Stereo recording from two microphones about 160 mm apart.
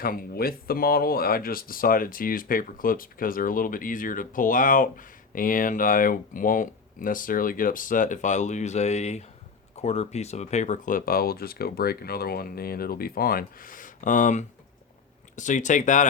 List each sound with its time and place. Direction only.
0.0 s speech: 65° left (ahead or behind)